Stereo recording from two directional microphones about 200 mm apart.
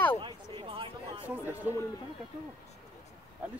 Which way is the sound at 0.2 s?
25° right (ahead or behind).